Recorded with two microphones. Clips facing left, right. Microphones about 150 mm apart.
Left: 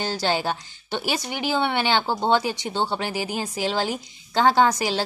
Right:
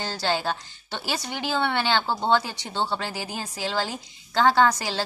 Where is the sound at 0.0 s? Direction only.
15° left (ahead or behind).